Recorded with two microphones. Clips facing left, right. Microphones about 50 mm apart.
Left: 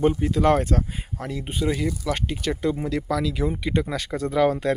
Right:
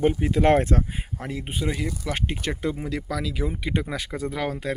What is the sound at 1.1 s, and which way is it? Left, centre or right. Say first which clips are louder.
Speech: left 2 dB; centre.